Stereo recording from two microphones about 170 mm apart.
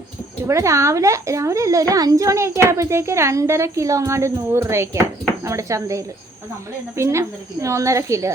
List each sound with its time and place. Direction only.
0.4 s a woman's voice: 15° right (ahead or behind)